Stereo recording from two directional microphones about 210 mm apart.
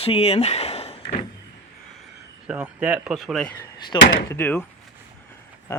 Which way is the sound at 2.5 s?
5° right (ahead or behind).